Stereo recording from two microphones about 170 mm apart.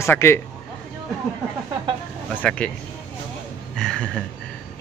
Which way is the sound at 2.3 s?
5° left (ahead or behind).